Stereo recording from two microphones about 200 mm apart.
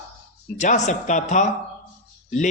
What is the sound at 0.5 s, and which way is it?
Speech, 35° left (ahead or behind).